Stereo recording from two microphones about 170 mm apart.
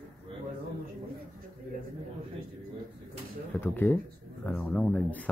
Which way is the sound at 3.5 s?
10° left (ahead or behind).